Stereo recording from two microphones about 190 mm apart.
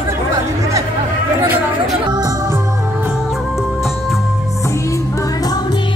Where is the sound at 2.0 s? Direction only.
20° right (ahead or behind).